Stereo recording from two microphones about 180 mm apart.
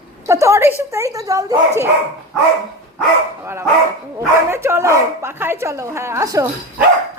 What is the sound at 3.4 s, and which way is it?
A woman's voice, 15° right (ahead or behind).